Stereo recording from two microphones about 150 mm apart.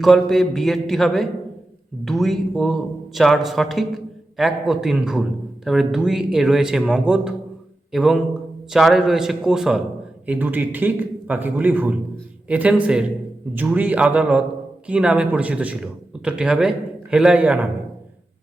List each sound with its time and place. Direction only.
0.0 s a man's voice: centre (ahead or behind)